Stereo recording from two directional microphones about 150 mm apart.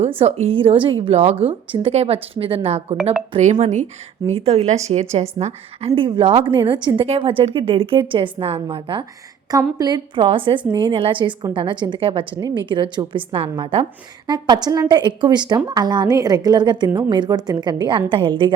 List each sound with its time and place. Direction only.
0.2 s a woman's voice: 45° right (ahead or behind)
3.0 s speech: 10° right (ahead or behind)
3.3 s a woman's voice: 50° right (ahead or behind); by 18.5 s 35° right (ahead or behind)